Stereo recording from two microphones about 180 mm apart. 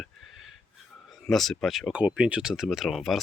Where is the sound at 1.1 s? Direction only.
Centre (ahead or behind).